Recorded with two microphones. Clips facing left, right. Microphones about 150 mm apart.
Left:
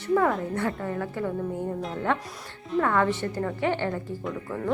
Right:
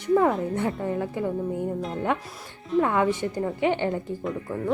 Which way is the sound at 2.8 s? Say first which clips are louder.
Right 2 dB; 15° right (ahead or behind).